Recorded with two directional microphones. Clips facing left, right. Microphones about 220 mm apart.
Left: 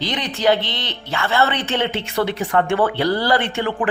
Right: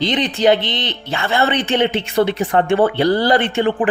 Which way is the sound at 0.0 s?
20° right (ahead or behind).